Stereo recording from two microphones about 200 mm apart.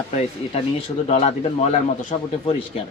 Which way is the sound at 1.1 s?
30° left (ahead or behind).